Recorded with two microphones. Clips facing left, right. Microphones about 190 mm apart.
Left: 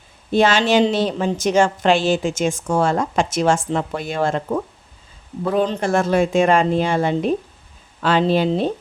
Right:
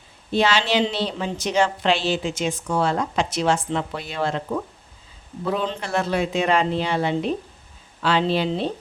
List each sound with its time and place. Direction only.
0.3 s a woman's voice: 50° left (ahead or behind)